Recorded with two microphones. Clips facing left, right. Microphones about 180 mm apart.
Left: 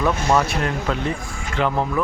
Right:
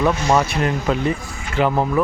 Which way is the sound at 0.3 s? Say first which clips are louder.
Right 2 dB; centre (ahead or behind).